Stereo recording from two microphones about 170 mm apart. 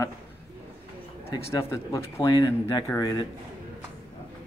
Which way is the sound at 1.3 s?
20° left (ahead or behind).